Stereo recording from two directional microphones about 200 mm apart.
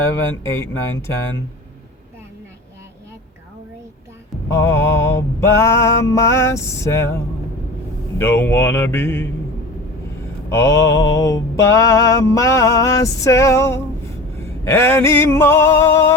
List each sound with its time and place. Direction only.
0.4 s mantra: 15° left (ahead or behind)
4.4 s mantra: 15° left (ahead or behind)
8.2 s mantra: 10° left (ahead or behind)
10.5 s mantra: 15° left (ahead or behind)